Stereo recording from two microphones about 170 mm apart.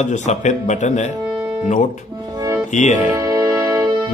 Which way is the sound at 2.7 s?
45° left (ahead or behind).